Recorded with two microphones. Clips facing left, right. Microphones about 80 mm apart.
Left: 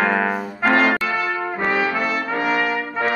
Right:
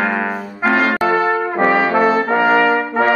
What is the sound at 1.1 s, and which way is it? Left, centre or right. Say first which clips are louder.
Brass instrument: right 7 dB; right.